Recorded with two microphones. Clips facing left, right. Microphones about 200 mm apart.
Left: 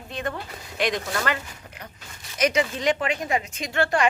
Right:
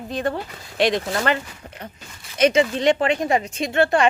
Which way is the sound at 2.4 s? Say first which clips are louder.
Right 6 dB; 30° right (ahead or behind).